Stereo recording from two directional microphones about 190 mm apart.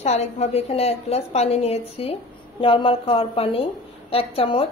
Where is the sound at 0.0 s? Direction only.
35° left (ahead or behind).